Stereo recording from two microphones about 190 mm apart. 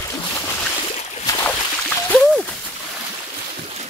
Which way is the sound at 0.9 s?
35° left (ahead or behind).